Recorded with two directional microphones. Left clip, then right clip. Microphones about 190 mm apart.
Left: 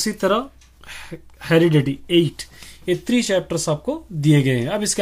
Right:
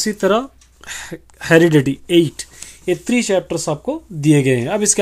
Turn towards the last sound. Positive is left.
turn(degrees=-25)  # may be behind; listen again after turning